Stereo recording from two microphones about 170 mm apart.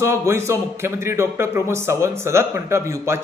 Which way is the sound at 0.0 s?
15° right (ahead or behind).